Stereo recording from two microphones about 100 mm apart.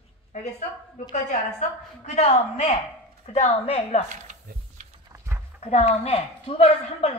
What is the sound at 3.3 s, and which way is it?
Speech, 85° left.